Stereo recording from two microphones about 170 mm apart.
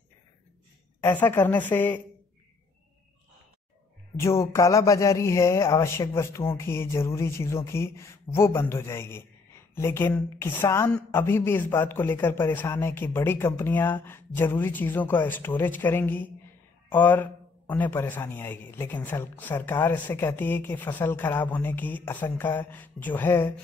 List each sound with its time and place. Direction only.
1.0 s a man's voice: 10° left (ahead or behind)
4.2 s a man's voice: 15° left (ahead or behind)